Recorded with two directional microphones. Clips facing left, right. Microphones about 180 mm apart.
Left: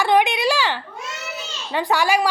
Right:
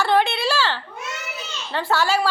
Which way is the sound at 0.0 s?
15° left (ahead or behind).